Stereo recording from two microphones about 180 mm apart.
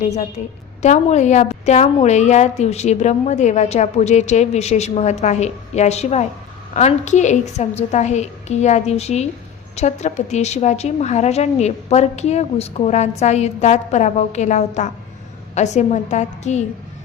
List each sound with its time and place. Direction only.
0.0 s a woman's voice: 40° left (ahead or behind)